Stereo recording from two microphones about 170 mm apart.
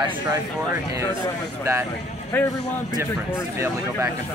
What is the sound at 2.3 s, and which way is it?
Speech, 15° left (ahead or behind).